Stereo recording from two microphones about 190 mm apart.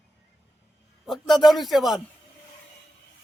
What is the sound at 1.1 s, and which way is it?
Speech, centre (ahead or behind).